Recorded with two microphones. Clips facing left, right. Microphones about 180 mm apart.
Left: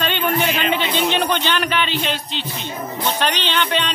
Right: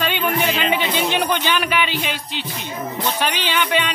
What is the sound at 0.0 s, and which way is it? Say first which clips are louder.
Speech: even; 10° right (ahead or behind).